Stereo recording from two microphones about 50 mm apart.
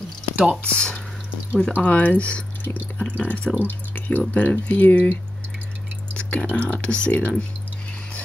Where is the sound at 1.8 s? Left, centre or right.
Left.